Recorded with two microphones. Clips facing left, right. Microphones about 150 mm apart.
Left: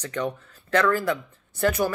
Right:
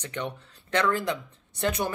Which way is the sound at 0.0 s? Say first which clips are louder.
Left 5 dB; 25° right (ahead or behind).